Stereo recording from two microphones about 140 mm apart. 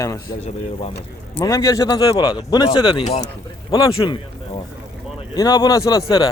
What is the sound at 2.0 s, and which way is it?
A man's voice, 35° left (ahead or behind).